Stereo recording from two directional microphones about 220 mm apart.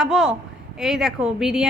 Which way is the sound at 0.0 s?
5° right (ahead or behind).